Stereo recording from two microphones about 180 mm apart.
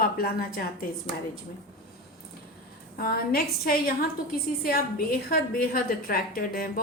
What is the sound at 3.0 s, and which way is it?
A woman's voice, 55° left (ahead or behind).